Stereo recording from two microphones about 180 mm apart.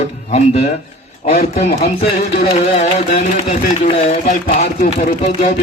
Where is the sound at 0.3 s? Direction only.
35° left (ahead or behind).